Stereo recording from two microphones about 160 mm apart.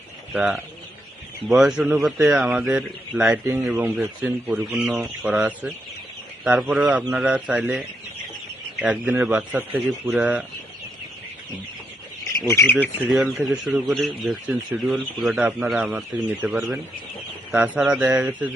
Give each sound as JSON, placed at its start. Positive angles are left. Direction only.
{"t": 0.3, "sound": "a man's voice", "side_deg": -5}
{"t": 12.2, "sound": "bird", "side_deg": 15}
{"t": 13.1, "sound": "a man's voice", "side_deg": -5}